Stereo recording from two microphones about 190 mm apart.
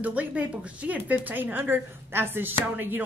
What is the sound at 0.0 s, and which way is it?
Speech, 10° right (ahead or behind).